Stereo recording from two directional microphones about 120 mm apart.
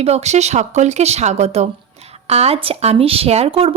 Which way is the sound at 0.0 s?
65° right (ahead or behind).